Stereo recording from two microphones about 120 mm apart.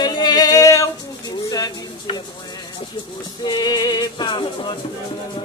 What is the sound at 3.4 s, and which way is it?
Male singing, 35° left (ahead or behind).